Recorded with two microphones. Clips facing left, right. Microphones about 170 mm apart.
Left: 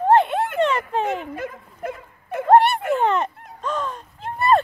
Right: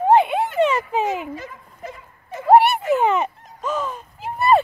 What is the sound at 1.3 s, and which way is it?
Dog, 55° left (ahead or behind).